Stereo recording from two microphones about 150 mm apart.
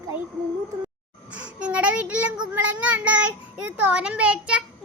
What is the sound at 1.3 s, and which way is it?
Child singing, 10° right (ahead or behind).